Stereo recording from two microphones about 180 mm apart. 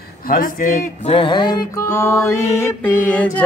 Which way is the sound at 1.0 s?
30° left (ahead or behind).